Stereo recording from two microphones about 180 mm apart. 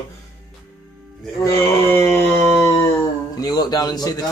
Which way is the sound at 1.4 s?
15° left (ahead or behind).